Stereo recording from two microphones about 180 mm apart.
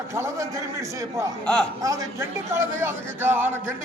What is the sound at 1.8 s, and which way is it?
A man's voice, 15° right (ahead or behind).